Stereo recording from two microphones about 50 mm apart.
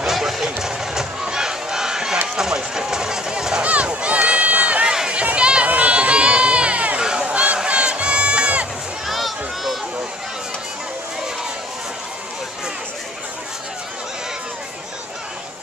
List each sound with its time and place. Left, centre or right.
0.0 s crowd: centre
2.2 s run: centre
3.6 s run: right
4.9 s a sound: centre
7.0 s crowd: centre
9.0 s a sound: centre